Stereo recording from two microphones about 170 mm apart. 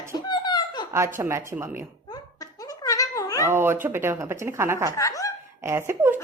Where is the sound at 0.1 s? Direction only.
25° left (ahead or behind).